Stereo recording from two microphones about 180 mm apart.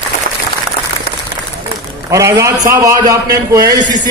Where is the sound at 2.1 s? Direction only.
15° right (ahead or behind).